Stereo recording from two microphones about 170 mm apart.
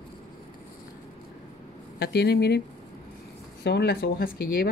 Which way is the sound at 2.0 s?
75° left (ahead or behind).